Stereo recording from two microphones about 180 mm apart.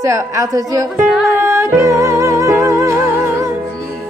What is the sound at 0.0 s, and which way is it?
Speech, 15° right (ahead or behind).